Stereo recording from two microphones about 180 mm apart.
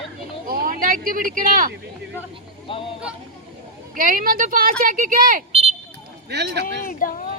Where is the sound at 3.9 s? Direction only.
50° right (ahead or behind).